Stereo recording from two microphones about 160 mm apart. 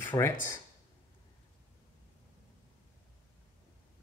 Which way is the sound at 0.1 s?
25° left (ahead or behind).